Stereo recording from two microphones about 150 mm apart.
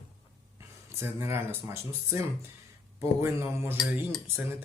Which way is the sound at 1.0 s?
15° right (ahead or behind).